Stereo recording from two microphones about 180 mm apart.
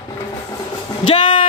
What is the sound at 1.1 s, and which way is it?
Music, 30° left (ahead or behind).